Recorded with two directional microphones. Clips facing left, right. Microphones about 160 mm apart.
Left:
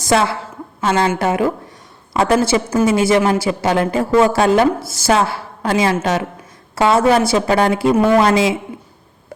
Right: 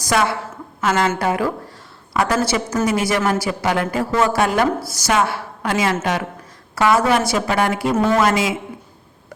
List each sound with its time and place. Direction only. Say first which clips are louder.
0.0 s a woman's voice: left 3 dB; 25° left (ahead or behind)